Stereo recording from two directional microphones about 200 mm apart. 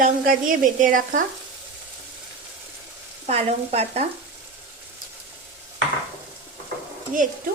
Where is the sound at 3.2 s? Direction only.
30° right (ahead or behind).